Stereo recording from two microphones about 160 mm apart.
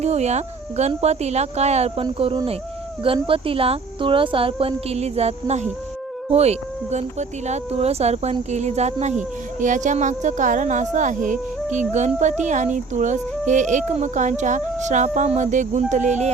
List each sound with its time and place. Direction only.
0.0 s a woman's voice: 45° right (ahead or behind)